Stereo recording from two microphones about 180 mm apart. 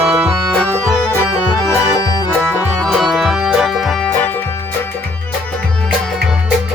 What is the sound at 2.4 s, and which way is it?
Music, 5° right (ahead or behind).